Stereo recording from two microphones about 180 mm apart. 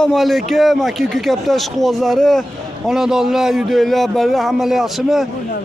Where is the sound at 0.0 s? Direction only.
Centre (ahead or behind).